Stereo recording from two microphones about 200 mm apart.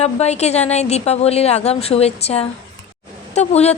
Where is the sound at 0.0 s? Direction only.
35° left (ahead or behind).